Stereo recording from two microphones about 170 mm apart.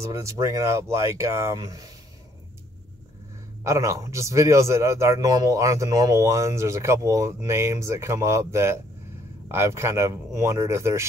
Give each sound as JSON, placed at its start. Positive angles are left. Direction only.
{"t": 0.0, "sound": "a man's voice", "side_deg": -15}
{"t": 3.6, "sound": "a man's voice", "side_deg": -15}